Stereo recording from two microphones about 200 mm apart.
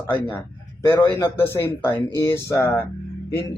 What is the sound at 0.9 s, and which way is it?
Speech, 25° left (ahead or behind).